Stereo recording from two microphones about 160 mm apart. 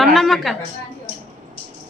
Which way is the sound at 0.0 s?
Centre (ahead or behind).